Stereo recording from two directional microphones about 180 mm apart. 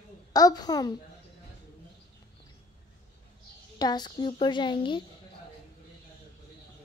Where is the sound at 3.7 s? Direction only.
25° left (ahead or behind).